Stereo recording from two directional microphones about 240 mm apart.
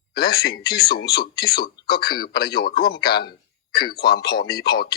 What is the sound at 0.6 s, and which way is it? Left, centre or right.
Speech, centre.